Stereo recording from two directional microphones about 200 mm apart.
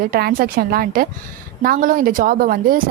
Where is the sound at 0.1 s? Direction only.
45° right (ahead or behind).